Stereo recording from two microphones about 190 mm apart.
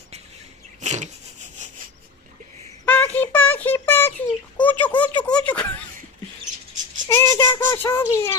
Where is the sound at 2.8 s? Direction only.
10° left (ahead or behind).